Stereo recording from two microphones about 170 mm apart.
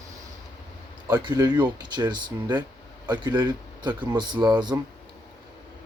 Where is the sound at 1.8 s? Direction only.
25° right (ahead or behind).